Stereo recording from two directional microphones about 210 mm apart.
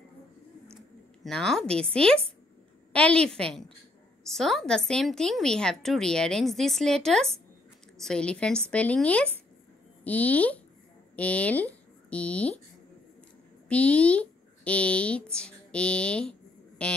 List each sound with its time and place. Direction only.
1.2 s a woman's voice: centre (ahead or behind)
13.7 s speech: 5° left (ahead or behind)